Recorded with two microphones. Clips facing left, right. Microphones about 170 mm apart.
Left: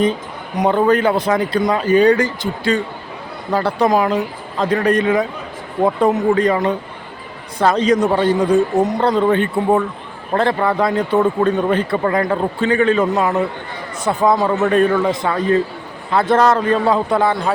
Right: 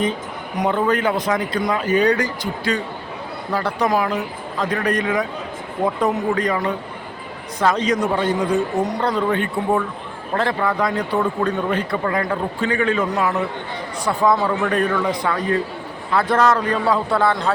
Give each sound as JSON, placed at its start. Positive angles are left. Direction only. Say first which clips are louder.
{"t": 0.7, "sound": "a man's voice", "louder": "left 5 dB", "side_deg": 35}
{"t": 14.3, "sound": "a man's voice", "louder": "left 4 dB", "side_deg": 40}
{"t": 14.7, "sound": "a man's voice", "louder": "left 5 dB", "side_deg": 25}